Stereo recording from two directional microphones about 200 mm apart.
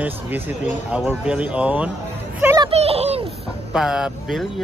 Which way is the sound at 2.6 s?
30° right (ahead or behind).